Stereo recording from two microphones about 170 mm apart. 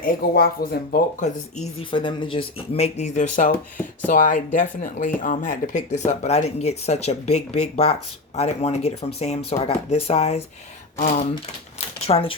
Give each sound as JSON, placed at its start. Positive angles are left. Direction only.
{"t": 0.0, "sound": "speech", "side_deg": 60}
{"t": 12.0, "sound": "speech", "side_deg": 35}